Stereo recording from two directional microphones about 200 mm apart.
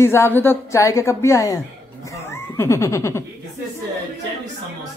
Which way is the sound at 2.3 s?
10° left (ahead or behind).